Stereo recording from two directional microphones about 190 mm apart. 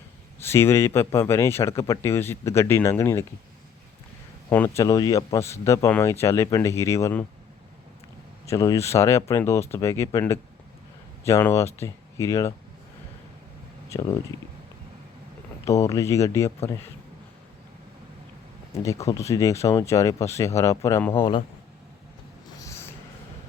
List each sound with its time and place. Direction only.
0.4 s speech: 10° left (ahead or behind)
4.4 s speech: 10° left (ahead or behind)
8.4 s speech: 15° left (ahead or behind)
13.9 s a man's voice: 20° left (ahead or behind)
15.6 s speech: 15° left (ahead or behind)
18.7 s speech: 15° left (ahead or behind)
21.1 s a man's voice: 30° left (ahead or behind)
22.6 s a sound: 15° left (ahead or behind)